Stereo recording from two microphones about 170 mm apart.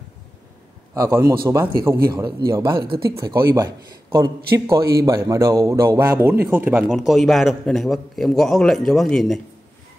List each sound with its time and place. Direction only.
0.9 s a man's voice: 20° right (ahead or behind); by 9.4 s centre (ahead or behind)